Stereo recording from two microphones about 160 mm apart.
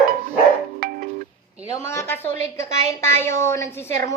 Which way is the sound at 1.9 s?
15° left (ahead or behind).